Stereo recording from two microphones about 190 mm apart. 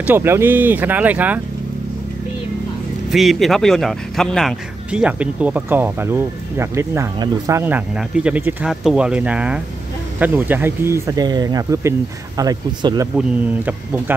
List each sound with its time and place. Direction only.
0.0 s speech: 10° right (ahead or behind)
3.1 s speech: centre (ahead or behind); by 13.1 s 20° right (ahead or behind)